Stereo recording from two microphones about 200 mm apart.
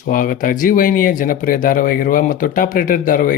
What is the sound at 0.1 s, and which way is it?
Speech, 45° left (ahead or behind).